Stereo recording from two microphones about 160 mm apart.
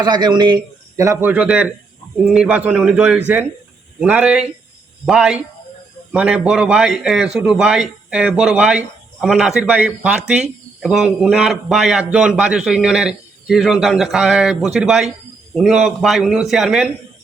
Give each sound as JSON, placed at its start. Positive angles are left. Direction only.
{"t": 0.0, "sound": "a man's voice", "side_deg": -25}